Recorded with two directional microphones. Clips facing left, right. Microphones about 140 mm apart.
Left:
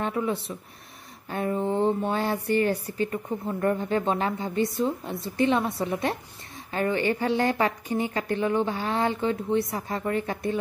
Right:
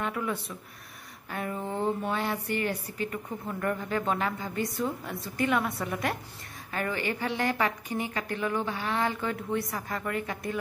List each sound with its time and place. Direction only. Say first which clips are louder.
0.0 s speech: left 4 dB; 30° left (ahead or behind)